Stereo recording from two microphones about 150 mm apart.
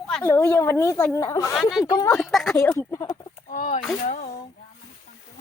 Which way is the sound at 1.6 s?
Centre (ahead or behind).